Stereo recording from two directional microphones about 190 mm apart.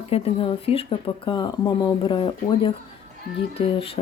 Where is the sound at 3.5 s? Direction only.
30° left (ahead or behind).